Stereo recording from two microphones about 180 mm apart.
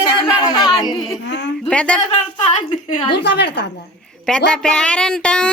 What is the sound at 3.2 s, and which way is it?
Speech, 70° left (ahead or behind).